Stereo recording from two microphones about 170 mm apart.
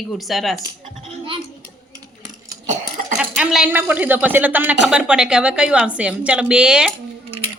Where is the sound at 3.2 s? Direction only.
5° right (ahead or behind).